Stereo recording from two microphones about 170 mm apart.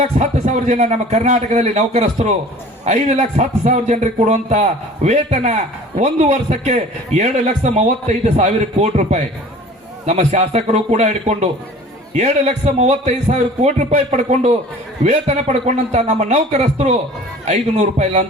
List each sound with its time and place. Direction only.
0.0 s a man's voice: 45° right (ahead or behind)